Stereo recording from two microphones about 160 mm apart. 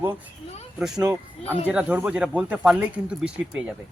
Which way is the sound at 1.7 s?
10° right (ahead or behind).